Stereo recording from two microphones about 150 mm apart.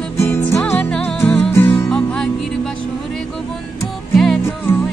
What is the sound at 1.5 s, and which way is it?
Music, 15° left (ahead or behind).